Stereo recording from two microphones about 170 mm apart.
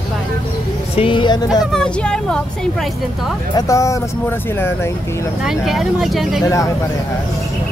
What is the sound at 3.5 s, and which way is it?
Speech, 20° left (ahead or behind).